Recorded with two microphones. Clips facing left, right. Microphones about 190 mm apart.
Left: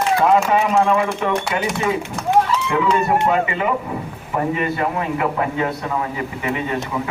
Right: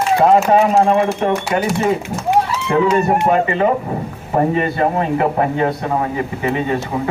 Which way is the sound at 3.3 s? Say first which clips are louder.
Right 4 dB; 40° right (ahead or behind).